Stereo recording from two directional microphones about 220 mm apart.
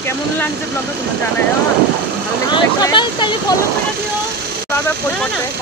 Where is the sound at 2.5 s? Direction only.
20° left (ahead or behind).